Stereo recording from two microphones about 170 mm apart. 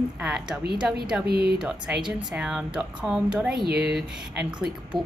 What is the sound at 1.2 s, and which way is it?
Speech, 65° right (ahead or behind).